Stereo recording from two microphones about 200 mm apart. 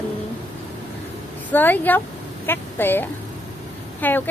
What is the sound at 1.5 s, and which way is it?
A woman's voice, 10° left (ahead or behind).